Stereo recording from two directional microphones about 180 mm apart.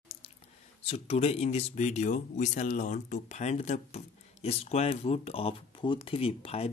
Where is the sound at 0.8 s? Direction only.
35° left (ahead or behind).